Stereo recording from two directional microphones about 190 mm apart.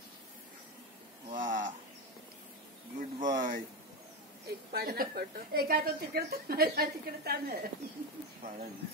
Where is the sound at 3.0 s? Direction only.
40° right (ahead or behind).